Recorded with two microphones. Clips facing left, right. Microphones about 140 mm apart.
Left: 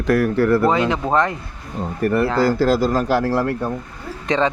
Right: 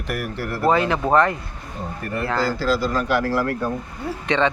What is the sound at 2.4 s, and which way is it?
Speech, 55° left (ahead or behind).